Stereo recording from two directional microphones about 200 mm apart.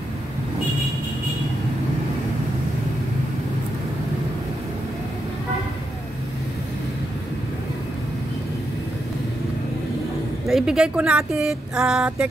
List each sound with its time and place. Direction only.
10.5 s speech: 5° right (ahead or behind)